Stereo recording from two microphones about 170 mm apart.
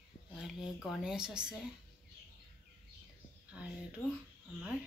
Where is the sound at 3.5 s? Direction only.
5° right (ahead or behind).